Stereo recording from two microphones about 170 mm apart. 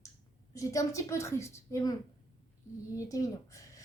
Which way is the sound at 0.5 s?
20° left (ahead or behind).